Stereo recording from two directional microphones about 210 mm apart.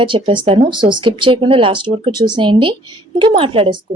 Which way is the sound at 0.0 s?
25° right (ahead or behind).